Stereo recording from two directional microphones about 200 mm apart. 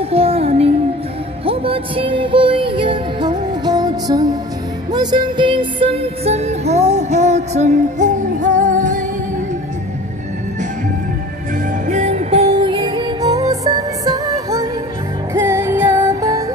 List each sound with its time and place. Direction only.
0.1 s music: 30° right (ahead or behind)
11.9 s music: 35° right (ahead or behind); by 16.4 s 15° right (ahead or behind)